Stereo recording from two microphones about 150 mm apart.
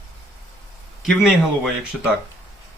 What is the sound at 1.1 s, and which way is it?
Speech, centre (ahead or behind).